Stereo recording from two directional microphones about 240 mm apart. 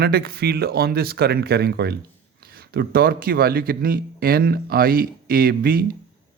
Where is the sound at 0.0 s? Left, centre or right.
Right.